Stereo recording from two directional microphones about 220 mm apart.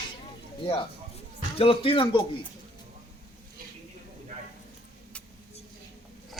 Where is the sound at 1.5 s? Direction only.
25° left (ahead or behind).